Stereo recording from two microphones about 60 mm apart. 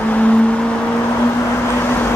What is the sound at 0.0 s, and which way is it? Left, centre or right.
Vehicle, left.